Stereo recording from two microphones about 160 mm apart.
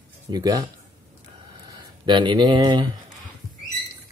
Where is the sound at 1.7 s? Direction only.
30° right (ahead or behind).